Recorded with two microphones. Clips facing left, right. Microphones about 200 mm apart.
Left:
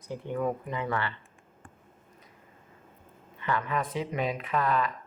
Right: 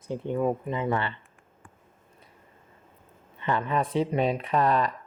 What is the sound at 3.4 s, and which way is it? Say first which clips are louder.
Speech: right 3 dB; 25° right (ahead or behind).